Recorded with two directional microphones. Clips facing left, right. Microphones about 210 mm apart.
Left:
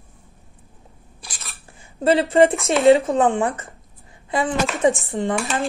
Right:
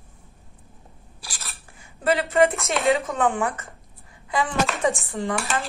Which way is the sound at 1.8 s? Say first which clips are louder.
Left 5 dB; 30° left (ahead or behind).